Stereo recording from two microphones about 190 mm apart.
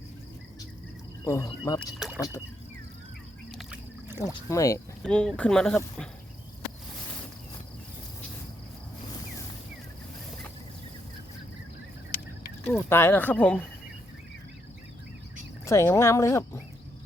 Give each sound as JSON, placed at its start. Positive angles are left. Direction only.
{"t": 1.2, "sound": "speech", "side_deg": 15}
{"t": 2.0, "sound": "speech", "side_deg": -5}
{"t": 3.5, "sound": "a sound", "side_deg": 0}
{"t": 4.4, "sound": "speech", "side_deg": 15}
{"t": 5.0, "sound": "speech", "side_deg": 5}
{"t": 12.6, "sound": "speech", "side_deg": 10}
{"t": 15.6, "sound": "speech", "side_deg": 15}